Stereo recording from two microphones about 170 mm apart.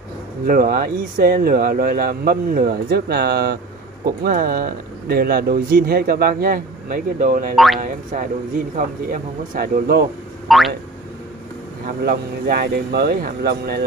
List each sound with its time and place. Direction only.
0.5 s speech: 55° right (ahead or behind)
7.5 s speech: centre (ahead or behind)
7.8 s speech: 50° right (ahead or behind)
10.5 s speech: centre (ahead or behind)
12.0 s speech: 65° right (ahead or behind)